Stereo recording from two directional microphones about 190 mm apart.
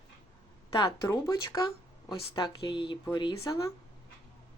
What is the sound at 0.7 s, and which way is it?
A woman's voice, 20° left (ahead or behind).